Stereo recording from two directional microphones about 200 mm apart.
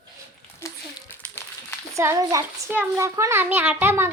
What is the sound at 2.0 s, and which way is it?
Speech, 15° right (ahead or behind).